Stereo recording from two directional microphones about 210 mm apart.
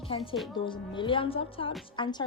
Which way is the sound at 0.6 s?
25° left (ahead or behind).